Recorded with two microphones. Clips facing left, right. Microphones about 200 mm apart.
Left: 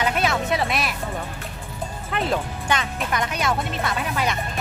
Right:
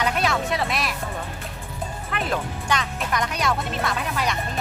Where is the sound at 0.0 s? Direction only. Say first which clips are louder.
Left 1 dB; centre (ahead or behind).